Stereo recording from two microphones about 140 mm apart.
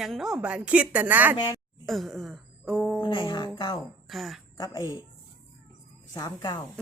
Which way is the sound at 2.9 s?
35° left (ahead or behind).